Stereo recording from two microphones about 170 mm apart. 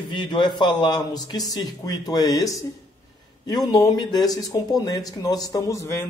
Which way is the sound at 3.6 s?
20° left (ahead or behind).